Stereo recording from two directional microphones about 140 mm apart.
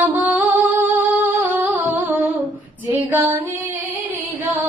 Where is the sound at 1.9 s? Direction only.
10° right (ahead or behind).